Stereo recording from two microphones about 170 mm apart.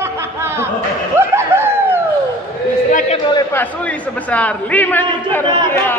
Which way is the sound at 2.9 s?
45° left (ahead or behind).